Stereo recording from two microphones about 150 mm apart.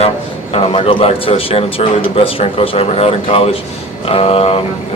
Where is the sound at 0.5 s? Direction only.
35° left (ahead or behind).